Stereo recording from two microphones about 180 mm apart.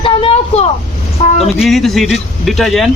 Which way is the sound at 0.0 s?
30° left (ahead or behind).